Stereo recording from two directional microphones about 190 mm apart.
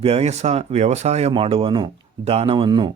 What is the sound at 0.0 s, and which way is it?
Speech, 35° right (ahead or behind).